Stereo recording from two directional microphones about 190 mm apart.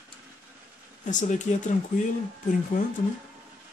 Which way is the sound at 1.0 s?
40° left (ahead or behind).